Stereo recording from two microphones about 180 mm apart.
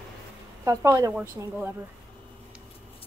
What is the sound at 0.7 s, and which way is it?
Speech, 20° right (ahead or behind).